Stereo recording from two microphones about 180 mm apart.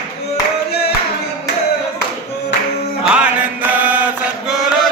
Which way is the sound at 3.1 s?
5° right (ahead or behind).